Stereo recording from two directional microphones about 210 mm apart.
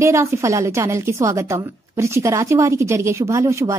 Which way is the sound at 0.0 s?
15° right (ahead or behind).